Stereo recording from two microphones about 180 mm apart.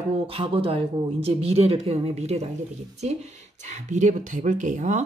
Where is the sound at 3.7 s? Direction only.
40° right (ahead or behind).